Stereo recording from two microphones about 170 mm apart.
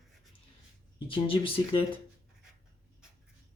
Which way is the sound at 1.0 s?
30° left (ahead or behind).